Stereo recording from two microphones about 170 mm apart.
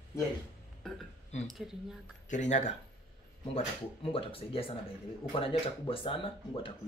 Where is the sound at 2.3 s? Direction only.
45° left (ahead or behind).